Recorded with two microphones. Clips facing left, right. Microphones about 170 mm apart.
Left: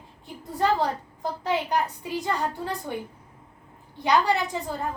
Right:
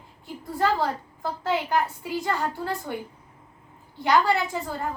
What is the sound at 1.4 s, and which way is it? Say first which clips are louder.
A woman's voice: right 1 dB; 15° left (ahead or behind).